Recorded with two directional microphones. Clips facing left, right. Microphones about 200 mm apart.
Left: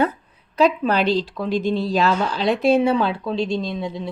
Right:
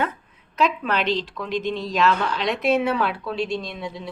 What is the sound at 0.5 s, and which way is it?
Speech, 35° left (ahead or behind).